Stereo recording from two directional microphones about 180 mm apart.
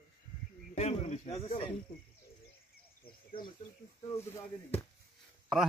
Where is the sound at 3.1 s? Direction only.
50° left (ahead or behind).